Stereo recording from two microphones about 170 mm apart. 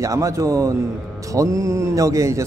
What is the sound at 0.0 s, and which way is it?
Speech, 20° right (ahead or behind).